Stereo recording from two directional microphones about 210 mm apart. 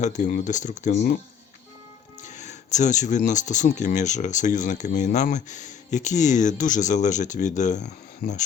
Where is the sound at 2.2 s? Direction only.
35° left (ahead or behind).